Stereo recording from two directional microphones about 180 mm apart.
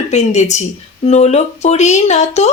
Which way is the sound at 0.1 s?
40° left (ahead or behind).